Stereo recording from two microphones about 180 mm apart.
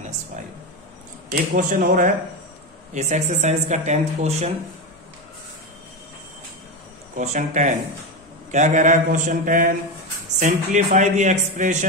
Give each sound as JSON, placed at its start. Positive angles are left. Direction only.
{"t": 1.3, "sound": "speech", "side_deg": -50}
{"t": 7.2, "sound": "speech", "side_deg": -40}